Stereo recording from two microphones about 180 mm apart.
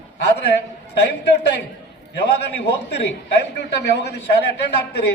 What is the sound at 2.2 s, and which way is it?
A man's voice, 65° left (ahead or behind).